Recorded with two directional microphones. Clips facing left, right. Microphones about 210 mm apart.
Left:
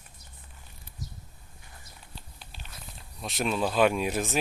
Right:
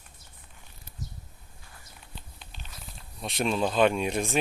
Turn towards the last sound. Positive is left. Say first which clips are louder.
# right 1 dB
turn(degrees=5)  # may be behind; listen again after turning